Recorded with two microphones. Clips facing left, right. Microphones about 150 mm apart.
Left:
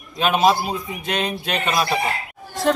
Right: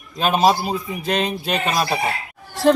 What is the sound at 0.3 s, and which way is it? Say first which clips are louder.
A woman's voice: right 1 dB; centre (ahead or behind).